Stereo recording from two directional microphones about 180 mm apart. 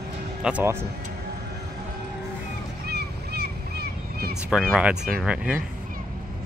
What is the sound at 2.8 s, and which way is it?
Boat, 65° right (ahead or behind).